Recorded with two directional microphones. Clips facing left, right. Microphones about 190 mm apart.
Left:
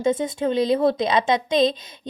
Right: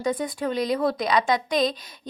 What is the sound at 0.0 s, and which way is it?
A woman's voice, 25° left (ahead or behind).